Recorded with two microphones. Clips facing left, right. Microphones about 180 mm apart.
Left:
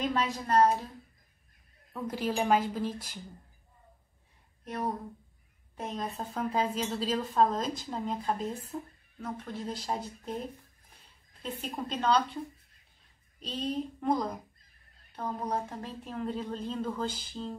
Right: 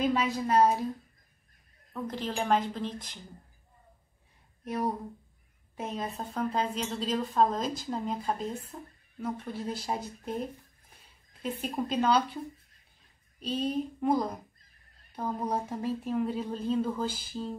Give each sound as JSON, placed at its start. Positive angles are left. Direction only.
{"t": 0.0, "sound": "speech", "side_deg": -5}
{"t": 2.0, "sound": "a woman's voice", "side_deg": 10}
{"t": 4.6, "sound": "a woman's voice", "side_deg": -10}
{"t": 11.9, "sound": "speech", "side_deg": -5}
{"t": 13.4, "sound": "speech", "side_deg": -10}